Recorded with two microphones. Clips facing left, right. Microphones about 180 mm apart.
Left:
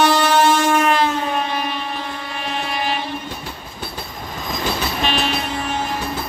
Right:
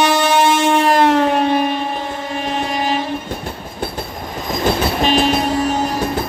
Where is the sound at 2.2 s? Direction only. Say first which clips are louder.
Right 7 dB; 45° right (ahead or behind).